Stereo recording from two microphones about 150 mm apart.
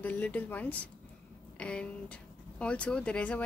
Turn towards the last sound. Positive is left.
turn(degrees=10)  # may be behind; listen again after turning